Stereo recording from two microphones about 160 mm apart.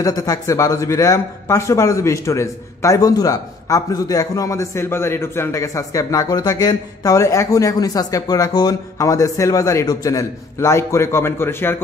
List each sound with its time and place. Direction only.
0.0 s speech: 20° left (ahead or behind)